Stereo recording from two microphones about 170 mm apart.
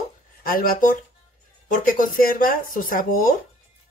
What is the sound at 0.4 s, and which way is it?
Speech, 60° left (ahead or behind).